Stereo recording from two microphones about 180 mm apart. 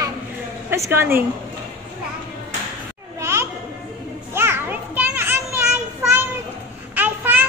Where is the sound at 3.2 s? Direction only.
15° right (ahead or behind).